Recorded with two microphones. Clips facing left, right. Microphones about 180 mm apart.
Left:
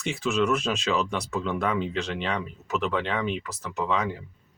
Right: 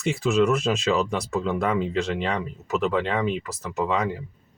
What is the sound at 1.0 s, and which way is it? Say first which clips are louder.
Speech: right 3 dB; 5° right (ahead or behind).